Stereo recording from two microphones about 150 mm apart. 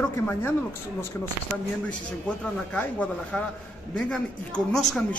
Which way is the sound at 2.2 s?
10° left (ahead or behind).